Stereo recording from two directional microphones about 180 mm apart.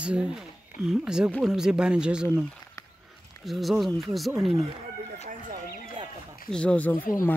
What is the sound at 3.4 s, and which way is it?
Speech, centre (ahead or behind).